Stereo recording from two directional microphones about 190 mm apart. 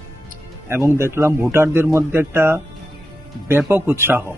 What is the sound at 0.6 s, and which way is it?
Speech, 10° right (ahead or behind).